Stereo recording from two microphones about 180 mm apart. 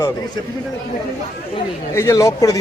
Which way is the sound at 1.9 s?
15° left (ahead or behind).